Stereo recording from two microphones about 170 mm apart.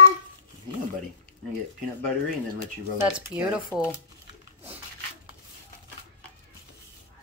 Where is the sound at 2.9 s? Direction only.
10° right (ahead or behind).